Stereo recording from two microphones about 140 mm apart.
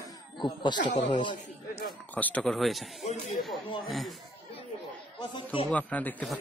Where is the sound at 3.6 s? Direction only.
35° left (ahead or behind).